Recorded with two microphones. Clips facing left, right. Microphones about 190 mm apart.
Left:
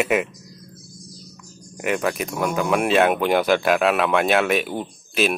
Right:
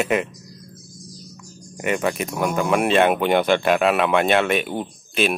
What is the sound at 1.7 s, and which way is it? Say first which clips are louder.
Speech: right 1 dB; centre (ahead or behind).